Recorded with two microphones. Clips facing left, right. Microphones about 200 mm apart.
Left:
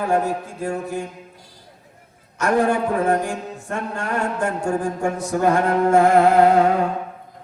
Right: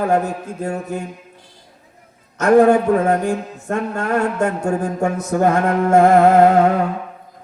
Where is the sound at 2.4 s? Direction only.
45° right (ahead or behind).